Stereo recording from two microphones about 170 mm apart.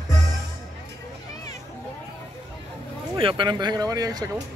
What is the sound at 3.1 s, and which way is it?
Speech, 30° right (ahead or behind).